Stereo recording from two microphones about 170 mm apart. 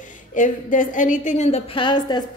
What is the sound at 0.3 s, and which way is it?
A woman's voice, 50° left (ahead or behind).